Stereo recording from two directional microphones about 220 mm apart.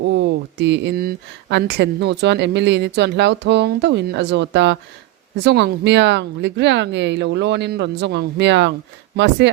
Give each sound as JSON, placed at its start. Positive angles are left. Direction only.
{"t": 0.0, "sound": "speech", "side_deg": -50}